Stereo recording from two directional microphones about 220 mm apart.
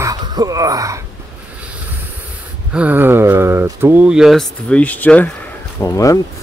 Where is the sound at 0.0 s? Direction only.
20° right (ahead or behind).